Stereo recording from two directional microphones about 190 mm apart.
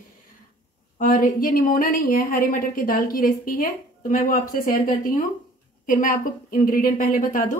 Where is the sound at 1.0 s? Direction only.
45° left (ahead or behind).